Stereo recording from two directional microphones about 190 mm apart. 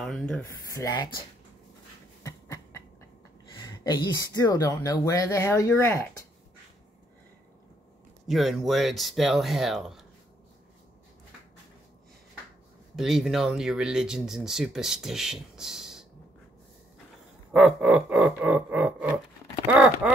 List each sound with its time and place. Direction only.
0.0 s speech: centre (ahead or behind)
2.2 s a sound: 15° left (ahead or behind)
3.5 s speech: 20° left (ahead or behind)
8.3 s speech: centre (ahead or behind)
12.9 s speech: centre (ahead or behind)
17.5 s music: 5° right (ahead or behind)